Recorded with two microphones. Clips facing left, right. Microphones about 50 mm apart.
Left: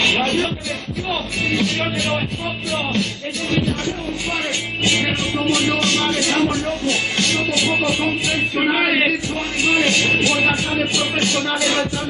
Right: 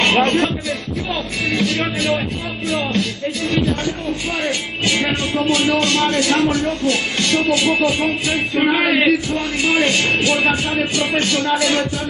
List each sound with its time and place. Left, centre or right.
0.0 s a sound: right
1.6 s speech: right
4.8 s music: right
5.4 s speech: right